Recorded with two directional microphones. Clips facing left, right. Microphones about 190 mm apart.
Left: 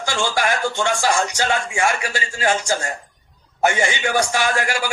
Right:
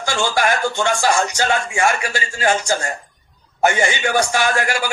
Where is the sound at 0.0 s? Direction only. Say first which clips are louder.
Right 2 dB; 50° right (ahead or behind).